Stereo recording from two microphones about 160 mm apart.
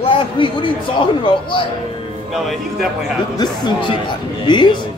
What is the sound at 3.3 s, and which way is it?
Speech, 25° left (ahead or behind).